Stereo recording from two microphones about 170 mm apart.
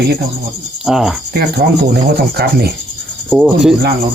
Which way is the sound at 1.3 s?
70° right (ahead or behind).